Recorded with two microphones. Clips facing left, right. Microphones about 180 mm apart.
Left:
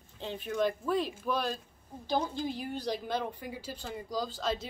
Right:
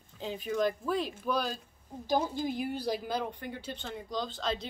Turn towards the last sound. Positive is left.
turn(degrees=5)  # may be behind; listen again after turning